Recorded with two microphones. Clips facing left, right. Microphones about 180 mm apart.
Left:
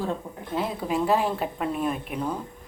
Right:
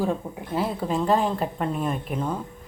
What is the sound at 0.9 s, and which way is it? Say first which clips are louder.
A woman's voice: even; 10° left (ahead or behind).